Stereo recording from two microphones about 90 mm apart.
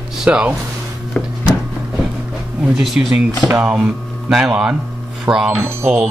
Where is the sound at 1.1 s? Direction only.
15° left (ahead or behind).